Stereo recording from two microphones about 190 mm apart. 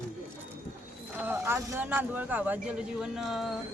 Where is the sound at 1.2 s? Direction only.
10° right (ahead or behind).